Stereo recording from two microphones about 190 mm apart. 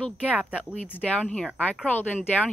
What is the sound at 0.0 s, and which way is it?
Speech, 5° left (ahead or behind).